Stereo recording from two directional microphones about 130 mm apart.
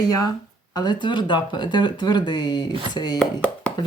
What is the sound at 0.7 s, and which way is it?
Speech, 30° left (ahead or behind).